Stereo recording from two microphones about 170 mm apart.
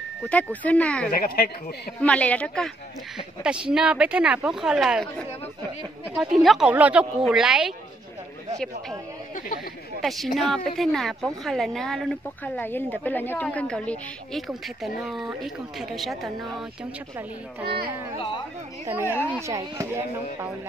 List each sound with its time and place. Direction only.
0.3 s speech: 10° left (ahead or behind)
1.1 s a woman's voice: 60° left (ahead or behind)
2.0 s speech: 10° left (ahead or behind)
3.4 s speech: 5° right (ahead or behind)
6.1 s speech: 5° right (ahead or behind)
10.0 s speech: centre (ahead or behind)
18.9 s speech: 15° right (ahead or behind)